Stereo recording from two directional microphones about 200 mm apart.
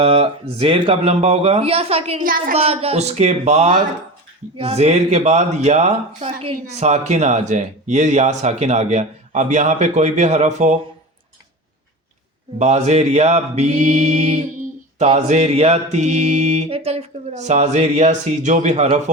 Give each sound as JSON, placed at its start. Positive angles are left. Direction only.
{"t": 0.0, "sound": "speech", "side_deg": -30}
{"t": 2.2, "sound": "speech", "side_deg": -45}
{"t": 2.6, "sound": "speech", "side_deg": -30}
{"t": 12.5, "sound": "speech", "side_deg": -35}